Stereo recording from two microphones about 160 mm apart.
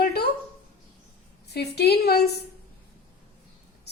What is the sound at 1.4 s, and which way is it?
Speech, 90° left.